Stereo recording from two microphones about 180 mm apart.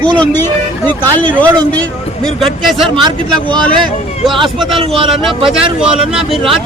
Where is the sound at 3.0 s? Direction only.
25° right (ahead or behind).